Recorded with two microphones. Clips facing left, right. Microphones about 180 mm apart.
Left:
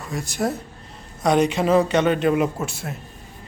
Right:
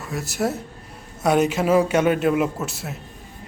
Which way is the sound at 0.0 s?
5° right (ahead or behind).